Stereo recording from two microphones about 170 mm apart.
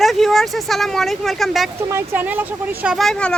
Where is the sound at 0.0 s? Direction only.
Centre (ahead or behind).